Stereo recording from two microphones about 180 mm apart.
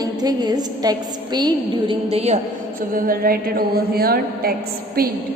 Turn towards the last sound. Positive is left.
turn(degrees=-55)  # may be behind; listen again after turning